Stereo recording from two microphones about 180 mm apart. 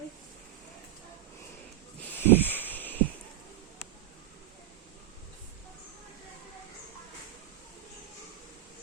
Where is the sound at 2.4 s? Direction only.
10° left (ahead or behind).